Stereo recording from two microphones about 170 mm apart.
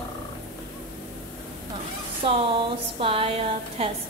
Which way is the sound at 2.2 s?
30° right (ahead or behind).